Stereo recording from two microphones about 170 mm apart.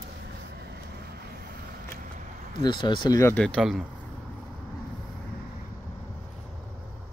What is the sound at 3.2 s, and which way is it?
Speech, 15° left (ahead or behind).